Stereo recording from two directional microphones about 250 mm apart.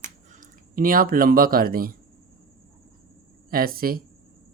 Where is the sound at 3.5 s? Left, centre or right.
Right.